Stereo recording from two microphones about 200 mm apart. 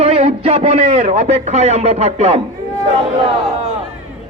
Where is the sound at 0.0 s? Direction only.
30° right (ahead or behind).